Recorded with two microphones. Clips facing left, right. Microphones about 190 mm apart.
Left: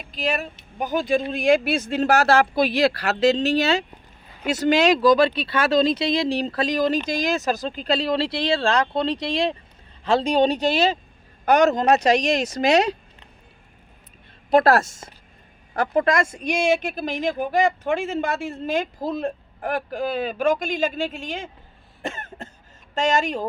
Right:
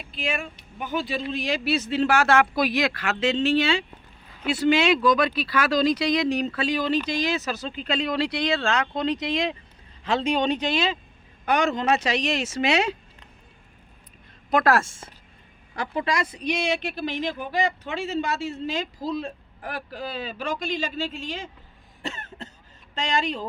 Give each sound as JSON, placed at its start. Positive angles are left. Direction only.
{"t": 0.0, "sound": "speech", "side_deg": 40}
{"t": 14.5, "sound": "speech", "side_deg": 35}
{"t": 22.0, "sound": "cough", "side_deg": 50}
{"t": 23.0, "sound": "speech", "side_deg": 45}